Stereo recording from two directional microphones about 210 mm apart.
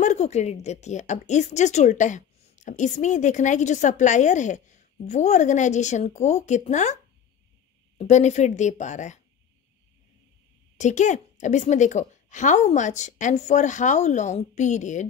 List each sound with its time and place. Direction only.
0.0 s a woman's voice: 35° left (ahead or behind)
8.0 s a woman's voice: 35° left (ahead or behind)
10.8 s a woman's voice: 35° left (ahead or behind)